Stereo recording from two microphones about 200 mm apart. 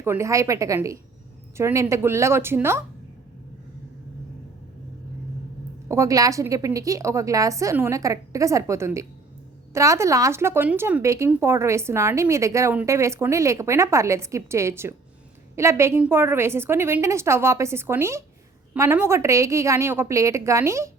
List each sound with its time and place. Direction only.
0.0 s speech: 15° right (ahead or behind)
5.9 s speech: 15° right (ahead or behind)